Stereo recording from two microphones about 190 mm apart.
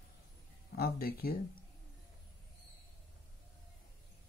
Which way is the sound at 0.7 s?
55° left (ahead or behind).